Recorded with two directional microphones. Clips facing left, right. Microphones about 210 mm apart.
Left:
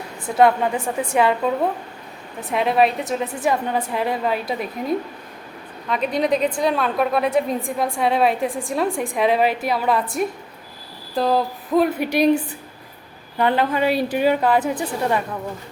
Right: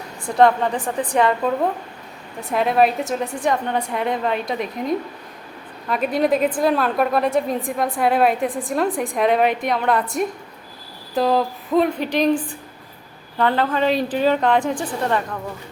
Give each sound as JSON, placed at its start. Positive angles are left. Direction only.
{"t": 0.3, "sound": "a woman's voice", "side_deg": 5}
{"t": 2.5, "sound": "a woman's voice", "side_deg": 0}
{"t": 13.4, "sound": "a woman's voice", "side_deg": 15}